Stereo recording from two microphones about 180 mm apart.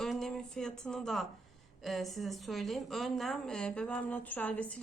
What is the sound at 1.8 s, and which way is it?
Speech, centre (ahead or behind).